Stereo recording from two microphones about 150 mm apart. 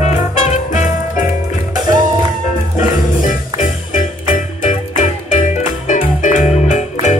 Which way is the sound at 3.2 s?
60° left (ahead or behind).